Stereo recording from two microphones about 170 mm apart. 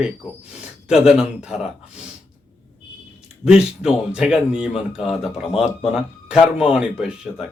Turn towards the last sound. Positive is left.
turn(degrees=-5)  # may be behind; listen again after turning